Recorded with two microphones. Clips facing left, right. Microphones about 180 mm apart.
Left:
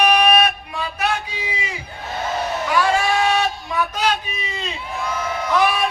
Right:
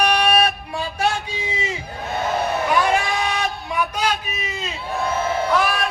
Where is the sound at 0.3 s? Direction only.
30° right (ahead or behind); by 4.2 s 10° right (ahead or behind).